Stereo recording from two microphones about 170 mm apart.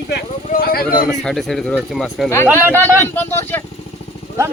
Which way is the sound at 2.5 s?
15° right (ahead or behind).